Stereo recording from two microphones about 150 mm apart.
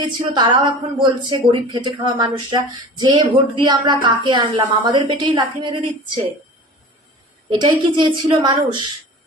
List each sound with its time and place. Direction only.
0.1 s a woman's voice: 30° right (ahead or behind)
7.6 s a woman's voice: 30° right (ahead or behind)